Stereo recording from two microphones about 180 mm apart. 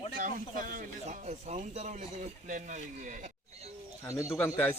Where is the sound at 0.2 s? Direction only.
50° right (ahead or behind).